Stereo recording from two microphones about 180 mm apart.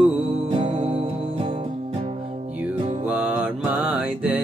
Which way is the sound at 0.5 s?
30° right (ahead or behind).